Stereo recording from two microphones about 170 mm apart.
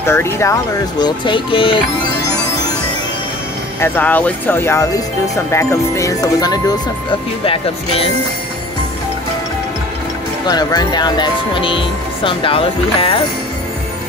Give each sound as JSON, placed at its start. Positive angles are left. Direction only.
{"t": 0.0, "sound": "speech", "side_deg": 15}
{"t": 1.0, "sound": "speech", "side_deg": 30}
{"t": 3.8, "sound": "speech", "side_deg": 10}
{"t": 7.4, "sound": "speech", "side_deg": 35}
{"t": 10.4, "sound": "speech", "side_deg": 25}